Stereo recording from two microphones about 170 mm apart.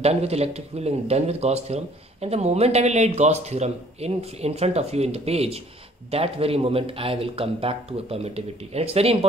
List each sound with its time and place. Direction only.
0.0 s speech: 35° right (ahead or behind)